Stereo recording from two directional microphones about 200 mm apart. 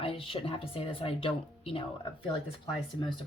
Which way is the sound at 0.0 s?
25° left (ahead or behind).